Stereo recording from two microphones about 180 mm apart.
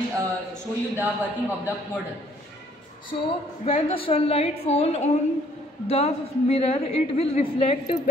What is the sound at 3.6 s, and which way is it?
A woman's voice, 30° left (ahead or behind).